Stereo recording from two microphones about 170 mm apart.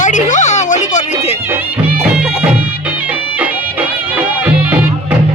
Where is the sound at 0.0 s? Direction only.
45° left (ahead or behind).